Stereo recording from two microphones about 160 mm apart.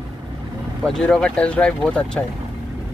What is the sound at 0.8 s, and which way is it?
Speech, 5° left (ahead or behind).